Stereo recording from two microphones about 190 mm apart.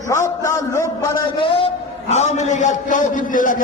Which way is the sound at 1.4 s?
25° left (ahead or behind).